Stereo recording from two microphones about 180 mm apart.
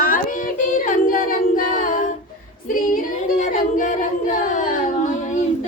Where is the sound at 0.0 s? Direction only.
50° left (ahead or behind).